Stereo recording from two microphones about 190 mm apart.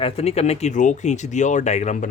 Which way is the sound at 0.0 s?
35° left (ahead or behind).